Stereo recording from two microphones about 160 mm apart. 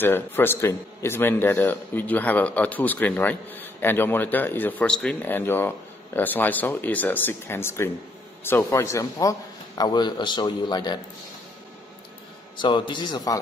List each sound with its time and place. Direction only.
0.0 s a man's voice: 15° left (ahead or behind)
12.5 s a man's voice: 30° left (ahead or behind)